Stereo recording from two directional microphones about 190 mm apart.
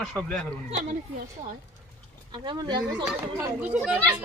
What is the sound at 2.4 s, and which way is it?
Speech, 20° right (ahead or behind).